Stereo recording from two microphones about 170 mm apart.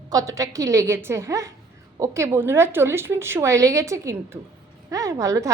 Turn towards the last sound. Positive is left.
turn(degrees=-20)  # may be behind; listen again after turning